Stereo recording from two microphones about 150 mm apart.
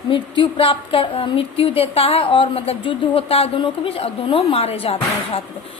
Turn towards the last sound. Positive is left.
turn(degrees=40)  # may be behind; listen again after turning